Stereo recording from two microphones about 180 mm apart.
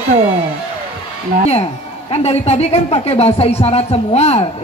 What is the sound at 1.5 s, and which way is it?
A woman's voice, 35° left (ahead or behind).